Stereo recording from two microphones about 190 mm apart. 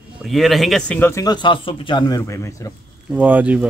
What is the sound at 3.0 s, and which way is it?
Speech, 5° right (ahead or behind).